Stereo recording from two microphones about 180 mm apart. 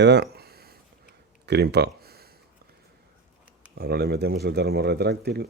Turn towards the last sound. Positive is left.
turn(degrees=-60)  # may be behind; listen again after turning